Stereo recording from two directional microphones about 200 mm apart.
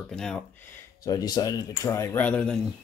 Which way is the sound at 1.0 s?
20° left (ahead or behind).